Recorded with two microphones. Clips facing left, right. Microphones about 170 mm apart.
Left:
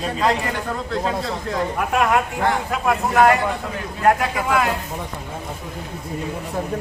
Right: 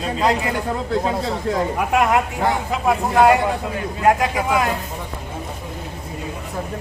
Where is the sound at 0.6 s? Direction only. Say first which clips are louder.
Right 3 dB; 20° right (ahead or behind).